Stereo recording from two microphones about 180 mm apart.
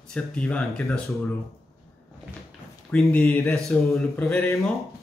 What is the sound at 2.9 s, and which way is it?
Speech, 10° left (ahead or behind).